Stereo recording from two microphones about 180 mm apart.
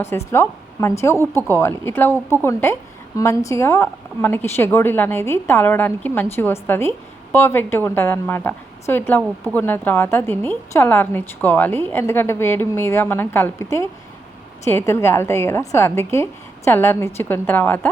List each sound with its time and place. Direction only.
0.3 s a woman's voice: 15° left (ahead or behind)